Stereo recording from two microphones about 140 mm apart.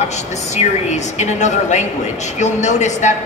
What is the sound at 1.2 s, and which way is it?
A woman's voice, 55° left (ahead or behind).